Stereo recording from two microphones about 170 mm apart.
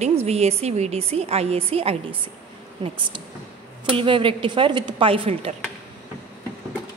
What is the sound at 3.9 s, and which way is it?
A woman's voice, 30° right (ahead or behind).